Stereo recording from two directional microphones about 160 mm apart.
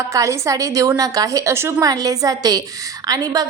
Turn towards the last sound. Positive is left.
turn(degrees=-25)  # may be behind; listen again after turning